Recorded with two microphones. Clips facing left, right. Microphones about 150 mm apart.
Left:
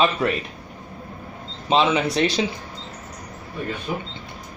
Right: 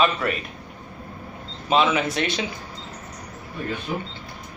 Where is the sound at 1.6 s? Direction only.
30° left (ahead or behind).